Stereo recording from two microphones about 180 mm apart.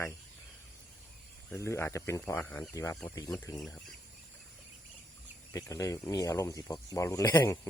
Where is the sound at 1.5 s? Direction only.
15° left (ahead or behind).